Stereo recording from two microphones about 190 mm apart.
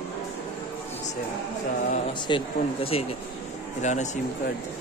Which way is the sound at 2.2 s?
25° left (ahead or behind).